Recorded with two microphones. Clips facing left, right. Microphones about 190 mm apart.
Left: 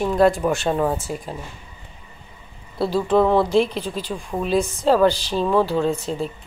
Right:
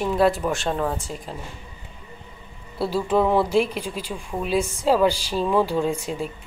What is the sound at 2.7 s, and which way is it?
A woman's voice, 10° right (ahead or behind).